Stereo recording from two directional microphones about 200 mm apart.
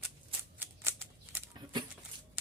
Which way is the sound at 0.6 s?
10° right (ahead or behind).